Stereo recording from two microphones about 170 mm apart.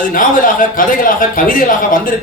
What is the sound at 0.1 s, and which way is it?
Speech, 55° left (ahead or behind).